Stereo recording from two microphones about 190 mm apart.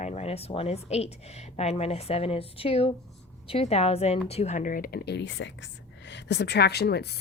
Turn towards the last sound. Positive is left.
turn(degrees=60)  # may be behind; listen again after turning